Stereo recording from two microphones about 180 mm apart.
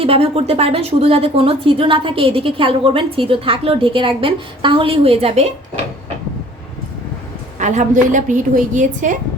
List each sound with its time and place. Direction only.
0.0 s a woman's voice: 30° right (ahead or behind)
7.6 s a woman's voice: 40° right (ahead or behind)